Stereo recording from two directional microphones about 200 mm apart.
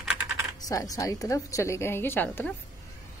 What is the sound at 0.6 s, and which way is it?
A woman's voice, 15° left (ahead or behind).